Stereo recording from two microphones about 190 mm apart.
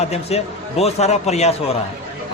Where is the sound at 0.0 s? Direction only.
35° left (ahead or behind).